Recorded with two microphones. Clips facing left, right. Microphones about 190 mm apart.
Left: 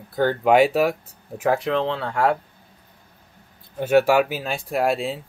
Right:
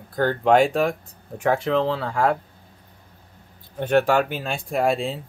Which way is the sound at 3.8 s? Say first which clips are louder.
Left 2 dB; 5° left (ahead or behind).